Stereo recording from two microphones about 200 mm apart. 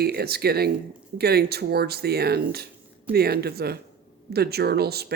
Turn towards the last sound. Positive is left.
turn(degrees=-50)  # may be behind; listen again after turning